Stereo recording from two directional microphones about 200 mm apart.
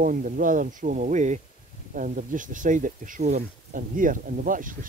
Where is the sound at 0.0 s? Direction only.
45° right (ahead or behind).